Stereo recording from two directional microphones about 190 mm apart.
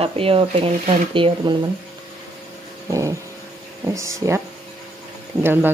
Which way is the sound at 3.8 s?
15° right (ahead or behind).